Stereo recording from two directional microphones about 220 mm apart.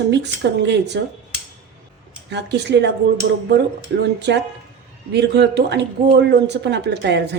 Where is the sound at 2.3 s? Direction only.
50° right (ahead or behind).